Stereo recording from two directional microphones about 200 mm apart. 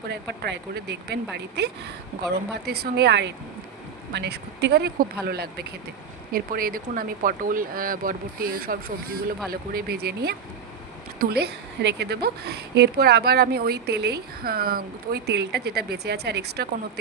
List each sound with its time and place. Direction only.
0.1 s a woman's voice: 60° right (ahead or behind)